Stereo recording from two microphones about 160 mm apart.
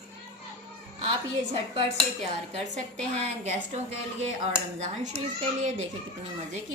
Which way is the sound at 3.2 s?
40° right (ahead or behind).